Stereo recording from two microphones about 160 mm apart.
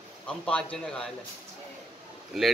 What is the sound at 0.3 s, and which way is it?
Speech, 5° left (ahead or behind).